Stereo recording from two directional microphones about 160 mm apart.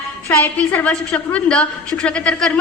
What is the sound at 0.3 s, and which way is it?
A woman's voice, 10° left (ahead or behind).